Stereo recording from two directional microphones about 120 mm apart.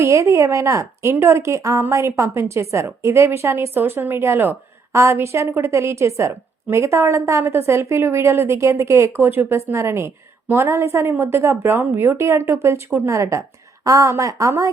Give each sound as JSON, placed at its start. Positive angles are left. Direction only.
{"t": 0.0, "sound": "a woman's voice", "side_deg": -25}